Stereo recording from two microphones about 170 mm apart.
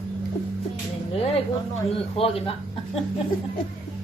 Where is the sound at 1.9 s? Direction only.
35° left (ahead or behind).